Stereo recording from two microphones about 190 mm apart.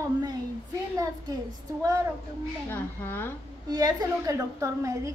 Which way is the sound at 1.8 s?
15° right (ahead or behind).